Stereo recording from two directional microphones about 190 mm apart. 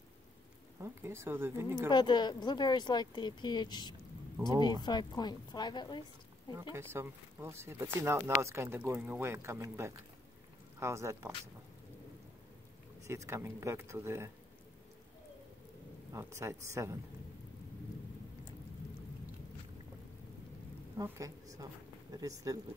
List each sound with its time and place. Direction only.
0.7 s speech: 10° right (ahead or behind)
1.9 s speech: 25° left (ahead or behind)
6.5 s speech: 15° right (ahead or behind)
13.0 s speech: 15° right (ahead or behind)
16.1 s speech: 15° right (ahead or behind)
21.0 s speech: 15° right (ahead or behind)